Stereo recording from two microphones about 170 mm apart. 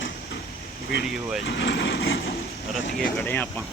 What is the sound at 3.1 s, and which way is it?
Speech, 10° left (ahead or behind).